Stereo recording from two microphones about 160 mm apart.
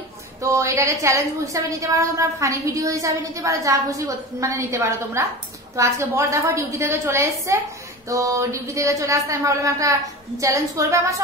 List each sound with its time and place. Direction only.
0.4 s a woman's voice: 20° right (ahead or behind)